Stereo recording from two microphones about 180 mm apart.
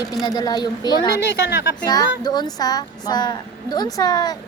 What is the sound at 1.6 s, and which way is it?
Speech, 75° left (ahead or behind).